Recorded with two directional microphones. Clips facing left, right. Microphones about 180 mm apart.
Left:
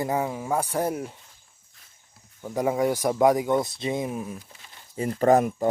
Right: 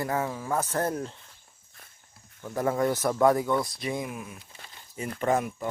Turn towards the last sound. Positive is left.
turn(degrees=40)  # may be behind; listen again after turning